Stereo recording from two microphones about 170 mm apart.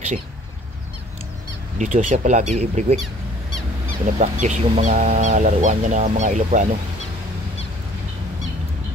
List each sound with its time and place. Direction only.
1.8 s speech: 50° right (ahead or behind)
4.0 s speech: 50° right (ahead or behind)